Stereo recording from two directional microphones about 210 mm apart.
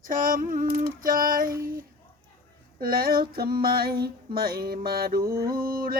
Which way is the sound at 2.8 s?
45° right (ahead or behind).